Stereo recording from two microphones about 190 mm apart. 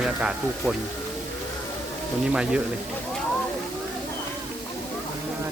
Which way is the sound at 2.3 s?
5° right (ahead or behind).